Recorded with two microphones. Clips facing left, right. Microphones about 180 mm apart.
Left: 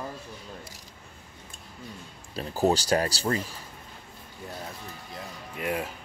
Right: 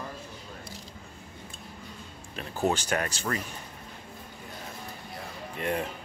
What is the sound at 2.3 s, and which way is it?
Speech, 35° left (ahead or behind).